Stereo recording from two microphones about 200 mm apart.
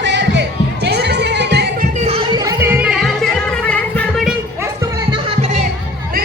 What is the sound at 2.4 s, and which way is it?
Music, 10° right (ahead or behind).